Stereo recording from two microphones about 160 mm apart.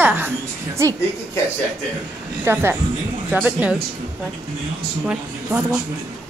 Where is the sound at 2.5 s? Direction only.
15° right (ahead or behind).